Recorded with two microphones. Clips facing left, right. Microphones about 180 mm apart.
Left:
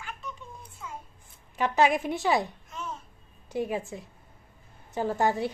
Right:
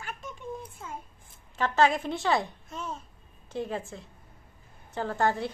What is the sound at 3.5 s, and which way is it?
A woman's voice, 15° left (ahead or behind).